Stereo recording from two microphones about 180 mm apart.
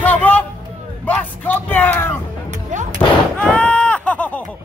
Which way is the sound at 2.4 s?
45° right (ahead or behind).